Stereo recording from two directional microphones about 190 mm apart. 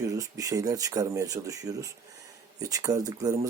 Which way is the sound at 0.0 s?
20° right (ahead or behind).